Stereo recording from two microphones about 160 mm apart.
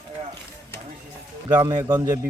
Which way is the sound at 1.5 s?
25° right (ahead or behind).